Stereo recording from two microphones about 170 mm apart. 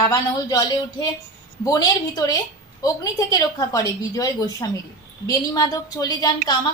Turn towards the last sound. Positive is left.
turn(degrees=20)  # may be behind; listen again after turning